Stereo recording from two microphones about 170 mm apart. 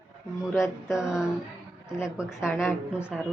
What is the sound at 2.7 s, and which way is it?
Speech, 5° right (ahead or behind).